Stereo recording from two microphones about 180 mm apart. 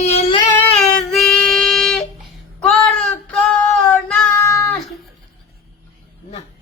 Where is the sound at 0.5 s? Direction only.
5° left (ahead or behind).